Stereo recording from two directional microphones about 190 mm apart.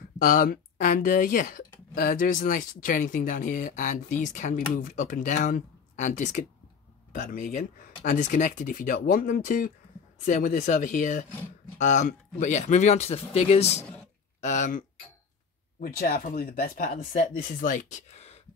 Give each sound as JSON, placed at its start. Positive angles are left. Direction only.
{"t": 0.2, "sound": "speech", "side_deg": 50}
{"t": 15.8, "sound": "speech", "side_deg": 50}